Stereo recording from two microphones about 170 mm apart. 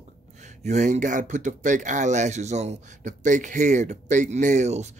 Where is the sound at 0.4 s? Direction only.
45° right (ahead or behind).